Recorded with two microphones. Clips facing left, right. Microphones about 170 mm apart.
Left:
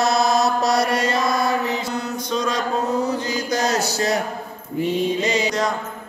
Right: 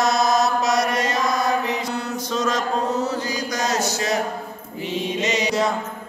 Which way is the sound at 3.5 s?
35° left (ahead or behind).